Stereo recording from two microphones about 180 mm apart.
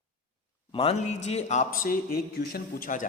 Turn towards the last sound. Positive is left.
turn(degrees=50)  # may be behind; listen again after turning